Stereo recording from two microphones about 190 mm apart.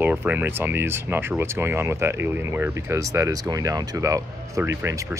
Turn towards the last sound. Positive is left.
turn(degrees=-15)  # may be behind; listen again after turning